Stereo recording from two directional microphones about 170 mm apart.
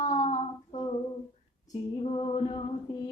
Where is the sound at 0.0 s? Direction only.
40° left (ahead or behind).